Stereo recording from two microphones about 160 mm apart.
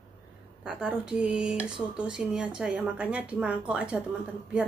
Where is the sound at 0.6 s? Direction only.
5° right (ahead or behind).